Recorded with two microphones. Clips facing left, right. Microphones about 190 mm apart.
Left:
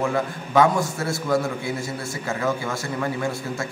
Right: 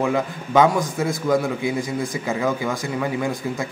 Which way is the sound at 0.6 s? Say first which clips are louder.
Right 2 dB; 15° right (ahead or behind).